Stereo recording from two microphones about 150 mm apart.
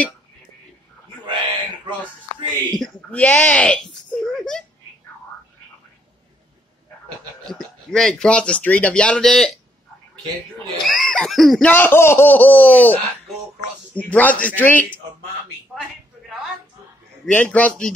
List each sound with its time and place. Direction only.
1.2 s a sound: 30° right (ahead or behind)
2.8 s a sound: 10° left (ahead or behind)
7.4 s speech: 5° left (ahead or behind)
10.8 s snicker: centre (ahead or behind)
11.7 s speech: 15° left (ahead or behind)
17.3 s speech: 10° left (ahead or behind)